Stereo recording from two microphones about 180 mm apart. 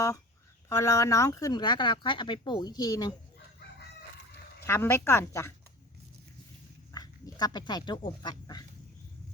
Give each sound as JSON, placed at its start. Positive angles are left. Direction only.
{"t": 0.7, "sound": "speech", "side_deg": 15}
{"t": 4.6, "sound": "speech", "side_deg": 15}
{"t": 6.9, "sound": "speech", "side_deg": 20}